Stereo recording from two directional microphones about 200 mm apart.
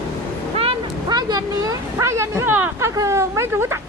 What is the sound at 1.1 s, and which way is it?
Speech, 20° right (ahead or behind).